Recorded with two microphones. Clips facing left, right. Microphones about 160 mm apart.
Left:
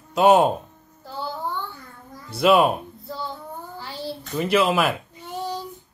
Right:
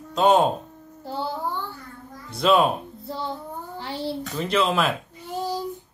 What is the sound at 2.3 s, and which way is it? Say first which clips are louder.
Speech: left 2 dB; 5° left (ahead or behind).